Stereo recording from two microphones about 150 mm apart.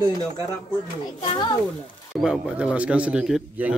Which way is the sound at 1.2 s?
35° left (ahead or behind).